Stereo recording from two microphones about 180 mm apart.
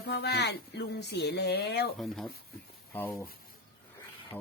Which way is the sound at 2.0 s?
Centre (ahead or behind).